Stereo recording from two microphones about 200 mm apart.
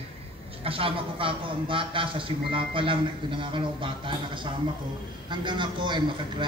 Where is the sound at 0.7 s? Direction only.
25° right (ahead or behind).